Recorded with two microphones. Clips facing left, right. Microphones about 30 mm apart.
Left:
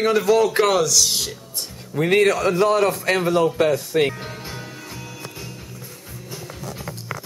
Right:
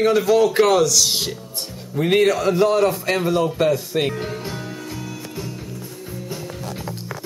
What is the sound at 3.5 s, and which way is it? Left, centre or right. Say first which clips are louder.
Speech: left 1 dB; centre.